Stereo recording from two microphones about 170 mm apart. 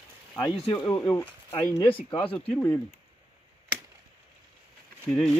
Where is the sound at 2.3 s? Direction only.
10° left (ahead or behind).